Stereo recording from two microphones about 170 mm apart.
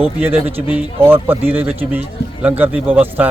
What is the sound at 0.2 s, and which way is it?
A man's voice, 10° right (ahead or behind).